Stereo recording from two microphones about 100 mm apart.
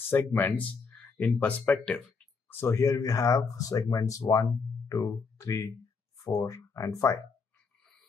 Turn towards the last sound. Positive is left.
turn(degrees=30)  # may be behind; listen again after turning